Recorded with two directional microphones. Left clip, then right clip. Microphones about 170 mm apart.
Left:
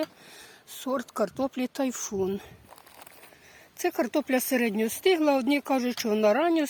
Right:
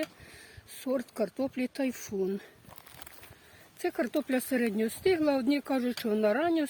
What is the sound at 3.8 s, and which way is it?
Speech, 20° left (ahead or behind).